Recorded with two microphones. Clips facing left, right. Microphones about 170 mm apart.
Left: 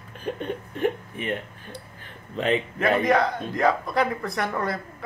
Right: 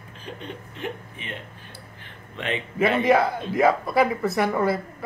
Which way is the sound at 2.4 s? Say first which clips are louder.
Left 5 dB; 40° left (ahead or behind).